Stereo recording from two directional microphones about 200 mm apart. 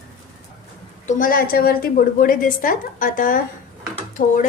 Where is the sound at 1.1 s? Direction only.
40° left (ahead or behind).